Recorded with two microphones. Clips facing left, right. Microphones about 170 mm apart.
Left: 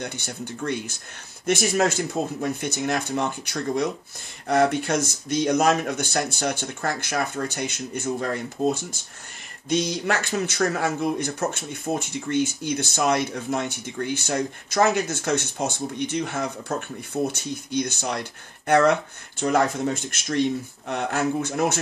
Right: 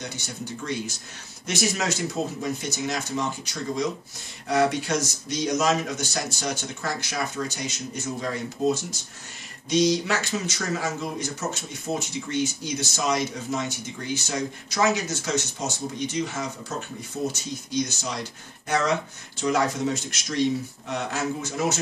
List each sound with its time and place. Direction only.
0.0 s speech: 55° left (ahead or behind)